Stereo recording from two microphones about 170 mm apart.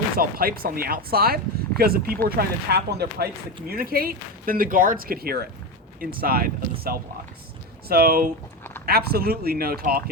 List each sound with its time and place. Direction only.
0.2 s speech: 60° right (ahead or behind)
3.7 s speech: 60° right (ahead or behind)